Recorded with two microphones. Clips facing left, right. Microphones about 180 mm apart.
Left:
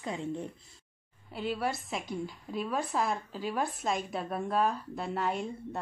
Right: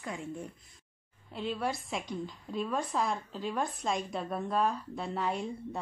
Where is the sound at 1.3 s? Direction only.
5° left (ahead or behind).